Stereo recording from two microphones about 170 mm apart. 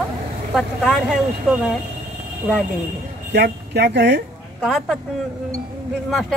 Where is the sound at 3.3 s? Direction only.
85° right.